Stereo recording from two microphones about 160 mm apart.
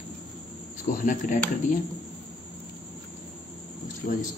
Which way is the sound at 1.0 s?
55° left (ahead or behind).